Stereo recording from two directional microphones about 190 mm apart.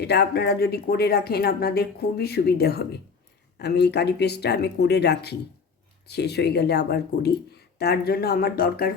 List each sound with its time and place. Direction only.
0.0 s speech: 60° left (ahead or behind)